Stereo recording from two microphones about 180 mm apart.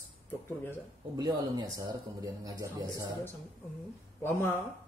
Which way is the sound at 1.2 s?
20° right (ahead or behind).